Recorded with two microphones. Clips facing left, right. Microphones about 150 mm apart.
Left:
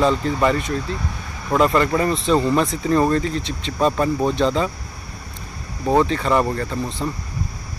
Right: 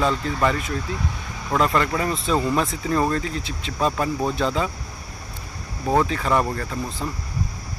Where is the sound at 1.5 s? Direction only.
Centre (ahead or behind).